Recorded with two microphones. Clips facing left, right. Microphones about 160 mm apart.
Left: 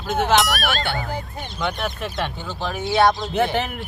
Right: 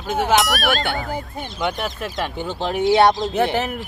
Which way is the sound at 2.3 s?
25° right (ahead or behind).